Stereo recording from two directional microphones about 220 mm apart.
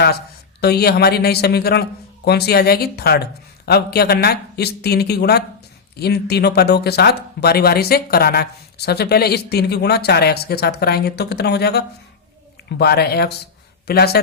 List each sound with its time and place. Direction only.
0.6 s speech: 45° left (ahead or behind)